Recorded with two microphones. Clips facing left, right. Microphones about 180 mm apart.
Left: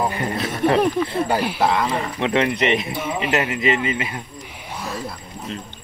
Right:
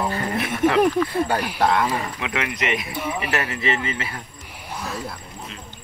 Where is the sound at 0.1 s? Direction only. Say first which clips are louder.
Even; 25° left (ahead or behind).